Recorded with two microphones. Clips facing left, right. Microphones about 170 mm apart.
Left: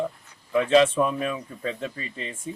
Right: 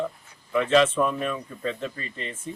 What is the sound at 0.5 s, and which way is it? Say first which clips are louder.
Speech: left 1 dB; 30° left (ahead or behind).